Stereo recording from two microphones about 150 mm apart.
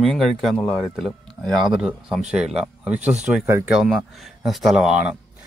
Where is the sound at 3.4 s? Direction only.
15° right (ahead or behind).